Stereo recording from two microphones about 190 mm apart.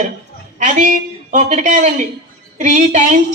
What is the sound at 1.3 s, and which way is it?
A man's voice, 40° right (ahead or behind).